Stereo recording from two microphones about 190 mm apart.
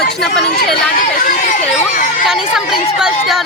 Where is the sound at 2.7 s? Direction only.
30° left (ahead or behind).